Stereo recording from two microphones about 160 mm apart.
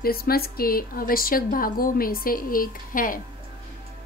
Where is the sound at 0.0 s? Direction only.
70° left (ahead or behind).